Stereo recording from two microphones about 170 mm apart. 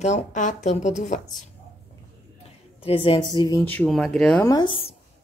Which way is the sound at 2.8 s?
35° left (ahead or behind).